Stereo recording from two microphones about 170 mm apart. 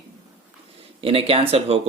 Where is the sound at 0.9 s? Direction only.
35° right (ahead or behind).